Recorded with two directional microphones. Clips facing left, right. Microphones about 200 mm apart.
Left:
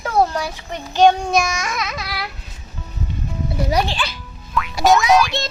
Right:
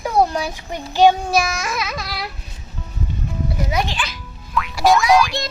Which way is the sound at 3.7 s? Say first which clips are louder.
Left 4 dB; 30° left (ahead or behind).